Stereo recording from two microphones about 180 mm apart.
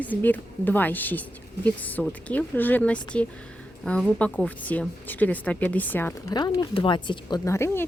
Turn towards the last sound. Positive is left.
turn(degrees=15)  # may be behind; listen again after turning